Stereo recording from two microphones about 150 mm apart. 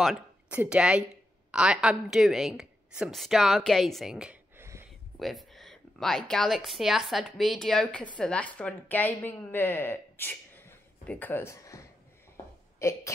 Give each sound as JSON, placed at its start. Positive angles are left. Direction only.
{"t": 0.5, "sound": "a woman's voice", "side_deg": -10}
{"t": 5.2, "sound": "speech", "side_deg": 0}